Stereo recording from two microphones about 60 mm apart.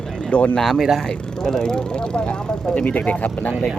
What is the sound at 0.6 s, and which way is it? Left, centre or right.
Speech, centre.